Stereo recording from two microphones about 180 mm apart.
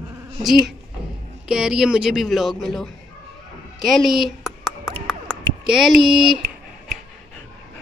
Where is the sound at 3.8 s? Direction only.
Centre (ahead or behind).